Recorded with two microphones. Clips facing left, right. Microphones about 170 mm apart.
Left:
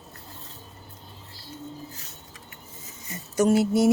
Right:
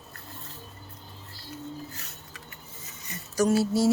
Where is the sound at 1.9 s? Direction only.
65° right (ahead or behind).